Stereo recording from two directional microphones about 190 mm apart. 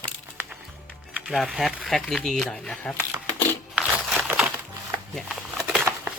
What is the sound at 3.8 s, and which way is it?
Crumpling, centre (ahead or behind).